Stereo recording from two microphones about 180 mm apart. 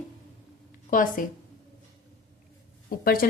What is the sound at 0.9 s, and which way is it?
Speech, 50° left (ahead or behind).